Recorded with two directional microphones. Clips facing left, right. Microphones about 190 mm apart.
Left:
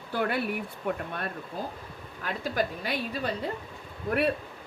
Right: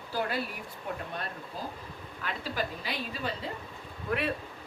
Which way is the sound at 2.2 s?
45° left (ahead or behind).